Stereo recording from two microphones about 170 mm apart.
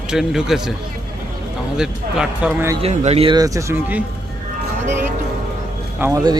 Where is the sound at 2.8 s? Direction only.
35° right (ahead or behind).